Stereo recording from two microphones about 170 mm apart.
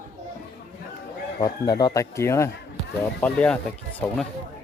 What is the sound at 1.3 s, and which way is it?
Speech, 20° left (ahead or behind).